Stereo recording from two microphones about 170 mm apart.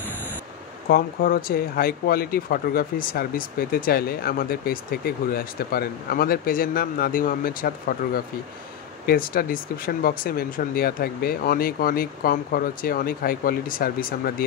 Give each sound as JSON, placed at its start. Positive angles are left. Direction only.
{"t": 0.8, "sound": "speech", "side_deg": 60}